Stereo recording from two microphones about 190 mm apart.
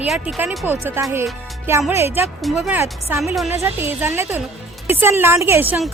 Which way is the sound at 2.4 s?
Centre (ahead or behind).